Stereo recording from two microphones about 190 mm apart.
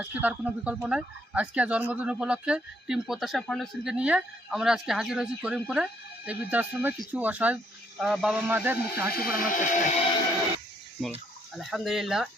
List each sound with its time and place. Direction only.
0.0 s speech: 5° right (ahead or behind)
9.1 s speech: 45° left (ahead or behind)
11.5 s speech: centre (ahead or behind)